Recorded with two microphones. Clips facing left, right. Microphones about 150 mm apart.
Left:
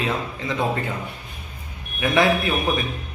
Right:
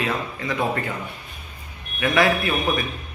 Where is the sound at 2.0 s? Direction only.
25° left (ahead or behind).